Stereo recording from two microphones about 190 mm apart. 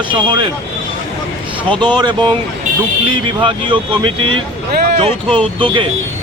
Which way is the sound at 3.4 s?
25° right (ahead or behind).